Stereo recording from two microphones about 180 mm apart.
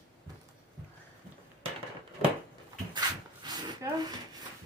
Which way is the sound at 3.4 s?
20° right (ahead or behind).